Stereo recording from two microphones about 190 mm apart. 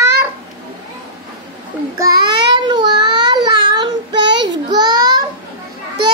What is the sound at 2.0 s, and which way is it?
Child singing, 20° right (ahead or behind).